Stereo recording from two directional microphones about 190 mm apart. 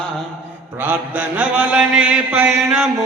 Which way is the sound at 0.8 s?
10° right (ahead or behind).